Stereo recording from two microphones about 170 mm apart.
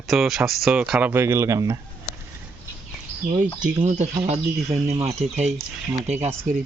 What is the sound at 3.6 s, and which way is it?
Speech, 45° right (ahead or behind).